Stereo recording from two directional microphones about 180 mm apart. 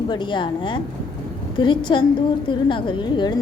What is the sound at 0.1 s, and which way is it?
A woman's voice, 25° left (ahead or behind).